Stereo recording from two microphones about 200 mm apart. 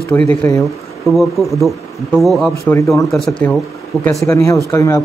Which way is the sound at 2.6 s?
15° left (ahead or behind).